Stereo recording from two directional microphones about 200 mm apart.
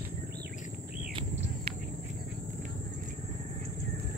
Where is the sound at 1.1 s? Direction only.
25° right (ahead or behind).